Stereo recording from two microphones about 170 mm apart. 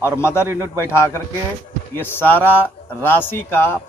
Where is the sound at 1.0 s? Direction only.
15° left (ahead or behind).